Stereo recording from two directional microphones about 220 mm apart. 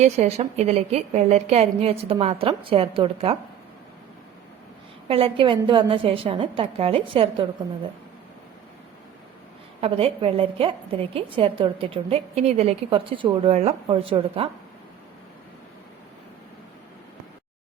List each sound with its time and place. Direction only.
0.0 s a woman's voice: 30° right (ahead or behind)
5.0 s a woman's voice: 25° right (ahead or behind)
9.8 s a woman's voice: 25° right (ahead or behind)